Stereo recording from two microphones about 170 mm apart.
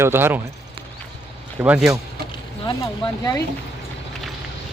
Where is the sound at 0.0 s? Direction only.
15° right (ahead or behind).